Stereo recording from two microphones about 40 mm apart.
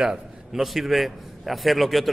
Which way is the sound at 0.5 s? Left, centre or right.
Centre.